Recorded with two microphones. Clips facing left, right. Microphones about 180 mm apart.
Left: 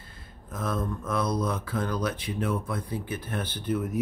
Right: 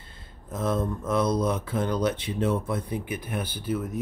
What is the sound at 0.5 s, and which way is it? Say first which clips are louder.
Speech: right 4 dB; 25° right (ahead or behind).